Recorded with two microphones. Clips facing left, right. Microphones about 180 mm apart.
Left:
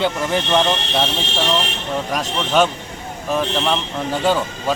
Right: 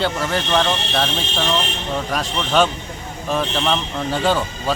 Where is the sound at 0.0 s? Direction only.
15° left (ahead or behind).